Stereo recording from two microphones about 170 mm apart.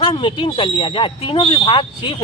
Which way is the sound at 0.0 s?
30° left (ahead or behind).